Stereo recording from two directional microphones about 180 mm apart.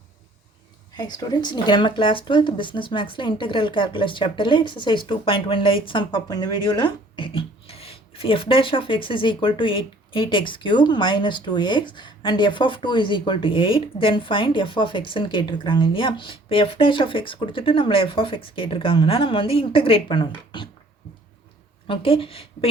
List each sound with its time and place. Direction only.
0.9 s speech: 25° left (ahead or behind)
21.8 s a woman's voice: 30° left (ahead or behind)